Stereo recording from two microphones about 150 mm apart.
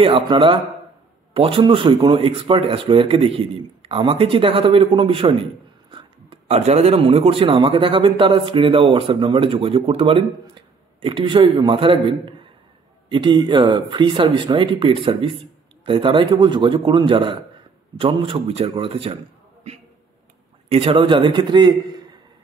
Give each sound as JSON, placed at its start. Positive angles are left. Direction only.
{"t": 0.0, "sound": "speech", "side_deg": -35}
{"t": 20.6, "sound": "speech", "side_deg": -40}